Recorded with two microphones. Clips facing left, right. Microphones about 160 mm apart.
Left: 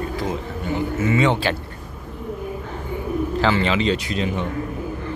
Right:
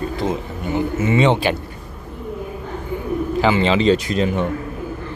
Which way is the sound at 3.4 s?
15° right (ahead or behind).